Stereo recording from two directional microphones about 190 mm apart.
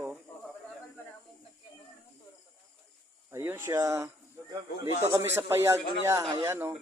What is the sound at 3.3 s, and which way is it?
Speech, 10° right (ahead or behind).